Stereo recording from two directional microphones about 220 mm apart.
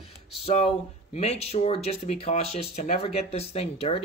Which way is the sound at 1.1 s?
30° left (ahead or behind).